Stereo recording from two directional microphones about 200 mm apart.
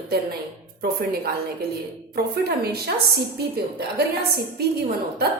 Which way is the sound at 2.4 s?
55° right (ahead or behind).